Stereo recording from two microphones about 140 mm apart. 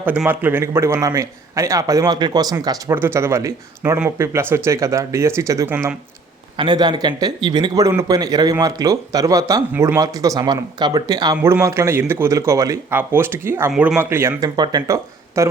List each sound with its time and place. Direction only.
0.3 s a man's voice: 15° right (ahead or behind)
2.9 s a man's voice: 15° right (ahead or behind)
6.6 s a man's voice: 30° right (ahead or behind)
14.5 s speech: 30° right (ahead or behind)